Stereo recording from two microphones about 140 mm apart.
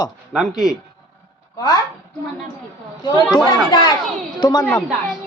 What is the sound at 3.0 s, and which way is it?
A woman's voice, 30° left (ahead or behind).